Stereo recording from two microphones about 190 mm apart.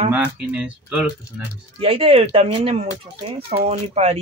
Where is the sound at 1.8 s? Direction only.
30° right (ahead or behind).